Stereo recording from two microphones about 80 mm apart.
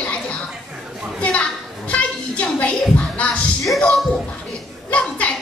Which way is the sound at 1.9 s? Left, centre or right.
Centre.